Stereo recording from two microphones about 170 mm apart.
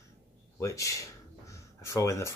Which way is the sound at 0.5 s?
20° left (ahead or behind).